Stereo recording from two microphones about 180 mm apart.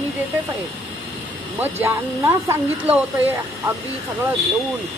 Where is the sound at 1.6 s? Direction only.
15° right (ahead or behind).